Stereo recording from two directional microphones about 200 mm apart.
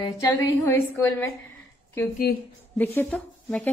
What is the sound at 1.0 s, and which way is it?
Speech, 15° left (ahead or behind).